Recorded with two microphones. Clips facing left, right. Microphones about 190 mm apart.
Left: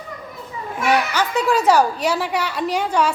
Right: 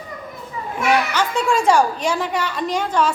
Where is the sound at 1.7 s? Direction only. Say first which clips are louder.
Even; 10° left (ahead or behind).